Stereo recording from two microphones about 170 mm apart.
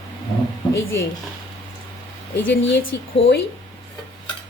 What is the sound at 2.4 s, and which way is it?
Speech, 90° left.